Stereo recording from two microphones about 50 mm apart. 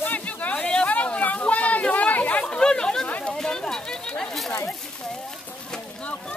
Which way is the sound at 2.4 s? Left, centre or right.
Centre.